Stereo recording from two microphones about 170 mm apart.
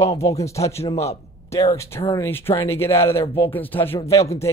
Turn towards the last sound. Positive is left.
turn(degrees=15)  # may be behind; listen again after turning